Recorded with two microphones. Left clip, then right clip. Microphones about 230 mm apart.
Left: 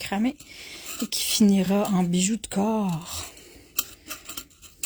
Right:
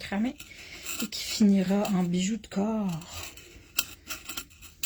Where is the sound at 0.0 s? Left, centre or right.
Left.